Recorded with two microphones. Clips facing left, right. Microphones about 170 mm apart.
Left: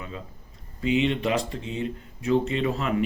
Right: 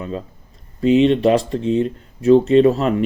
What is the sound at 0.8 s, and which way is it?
Speech, 35° right (ahead or behind).